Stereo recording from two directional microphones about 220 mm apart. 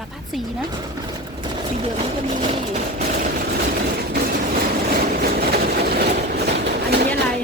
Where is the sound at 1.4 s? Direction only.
25° right (ahead or behind).